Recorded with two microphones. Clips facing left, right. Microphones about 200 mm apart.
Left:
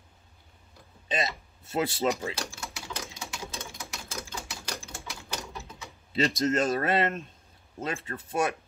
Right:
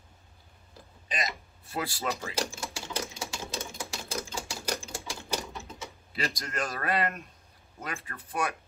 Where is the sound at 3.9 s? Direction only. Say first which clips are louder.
Right 4 dB; 30° right (ahead or behind).